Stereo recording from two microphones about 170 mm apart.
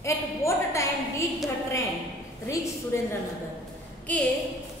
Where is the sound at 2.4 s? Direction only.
15° left (ahead or behind).